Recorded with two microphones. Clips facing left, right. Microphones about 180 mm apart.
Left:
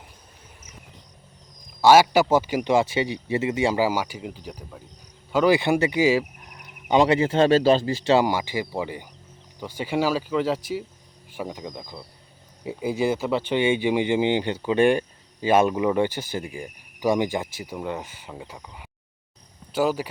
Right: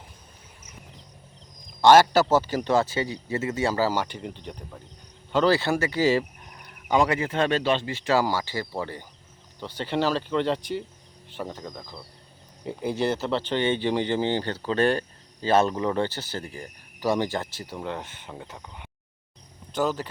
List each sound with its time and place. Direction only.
1.8 s speech: 10° left (ahead or behind)
6.8 s speech: 25° left (ahead or behind); by 20.1 s 10° left (ahead or behind)